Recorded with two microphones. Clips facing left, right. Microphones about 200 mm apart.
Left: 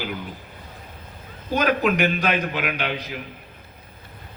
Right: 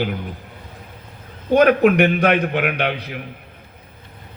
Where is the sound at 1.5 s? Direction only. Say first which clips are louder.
Right 8 dB; 60° right (ahead or behind).